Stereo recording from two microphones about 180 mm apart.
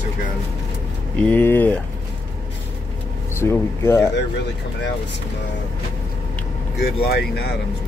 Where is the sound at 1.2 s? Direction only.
10° left (ahead or behind).